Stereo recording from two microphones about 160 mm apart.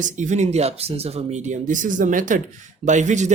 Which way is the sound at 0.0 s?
50° right (ahead or behind).